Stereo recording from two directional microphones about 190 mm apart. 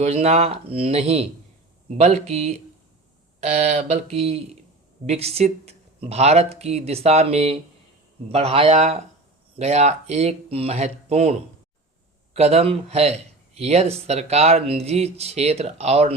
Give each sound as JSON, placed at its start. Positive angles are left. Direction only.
{"t": 0.0, "sound": "speech", "side_deg": -35}